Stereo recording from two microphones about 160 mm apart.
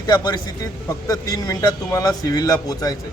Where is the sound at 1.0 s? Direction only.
20° left (ahead or behind).